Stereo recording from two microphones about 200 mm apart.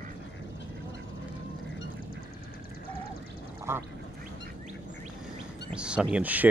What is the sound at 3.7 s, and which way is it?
Duck, 15° right (ahead or behind).